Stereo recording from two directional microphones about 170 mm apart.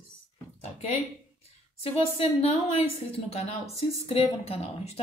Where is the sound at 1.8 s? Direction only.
35° left (ahead or behind).